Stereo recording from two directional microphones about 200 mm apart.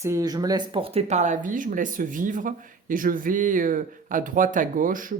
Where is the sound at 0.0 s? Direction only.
15° right (ahead or behind).